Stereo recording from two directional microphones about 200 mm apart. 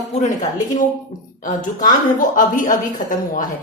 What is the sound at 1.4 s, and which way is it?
A woman's voice, 40° left (ahead or behind).